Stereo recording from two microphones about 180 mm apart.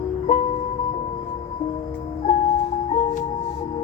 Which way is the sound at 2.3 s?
35° left (ahead or behind).